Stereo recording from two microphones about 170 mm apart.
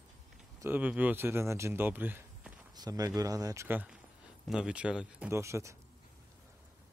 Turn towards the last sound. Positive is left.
turn(degrees=-15)  # may be behind; listen again after turning